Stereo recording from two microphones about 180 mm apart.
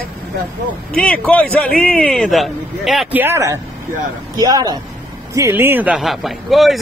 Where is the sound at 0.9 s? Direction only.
5° left (ahead or behind).